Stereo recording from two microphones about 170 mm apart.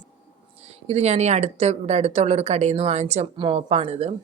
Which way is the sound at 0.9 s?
40° right (ahead or behind).